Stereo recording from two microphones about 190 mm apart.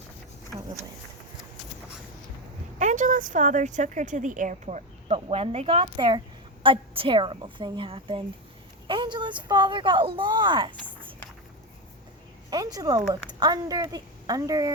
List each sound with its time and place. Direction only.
2.7 s a woman's voice: 40° right (ahead or behind); by 10.7 s 25° right (ahead or behind)
12.5 s a woman's voice: 20° right (ahead or behind)